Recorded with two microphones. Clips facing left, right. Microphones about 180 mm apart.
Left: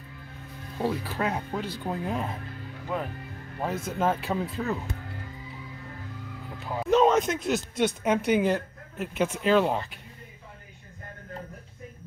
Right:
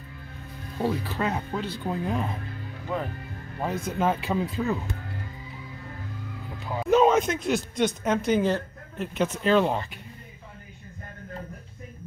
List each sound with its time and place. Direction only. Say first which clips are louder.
0.8 s speech: right 1 dB; 10° left (ahead or behind)
3.6 s speech: right 1 dB; 5° left (ahead or behind)
6.7 s speech: right 1 dB; centre (ahead or behind)